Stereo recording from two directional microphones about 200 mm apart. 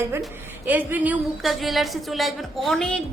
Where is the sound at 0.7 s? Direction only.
10° right (ahead or behind).